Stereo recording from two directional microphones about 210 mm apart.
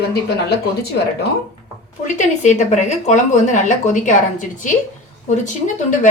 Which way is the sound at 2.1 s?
35° left (ahead or behind).